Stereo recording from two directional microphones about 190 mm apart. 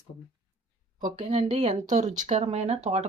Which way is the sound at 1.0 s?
35° right (ahead or behind).